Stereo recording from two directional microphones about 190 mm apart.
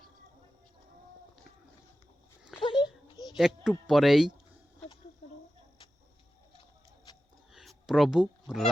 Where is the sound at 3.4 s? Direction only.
Centre (ahead or behind).